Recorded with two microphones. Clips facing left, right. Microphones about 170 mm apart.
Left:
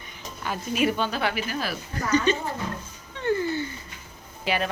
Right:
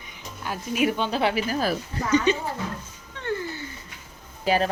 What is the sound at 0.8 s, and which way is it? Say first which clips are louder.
Speech: right 2 dB; 15° right (ahead or behind).